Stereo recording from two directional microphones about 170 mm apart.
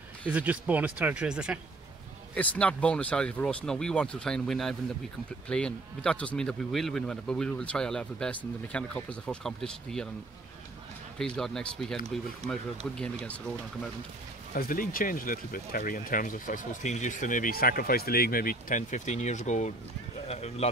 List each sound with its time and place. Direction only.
0.3 s speech: 10° right (ahead or behind)
2.3 s speech: 10° left (ahead or behind)
11.1 s speech: 5° left (ahead or behind)
14.5 s speech: 55° left (ahead or behind); by 20.7 s 40° left (ahead or behind)